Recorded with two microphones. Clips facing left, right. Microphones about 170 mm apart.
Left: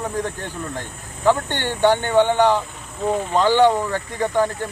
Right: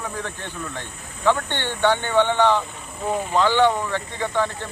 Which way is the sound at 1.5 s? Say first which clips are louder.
Left 3 dB; 10° left (ahead or behind).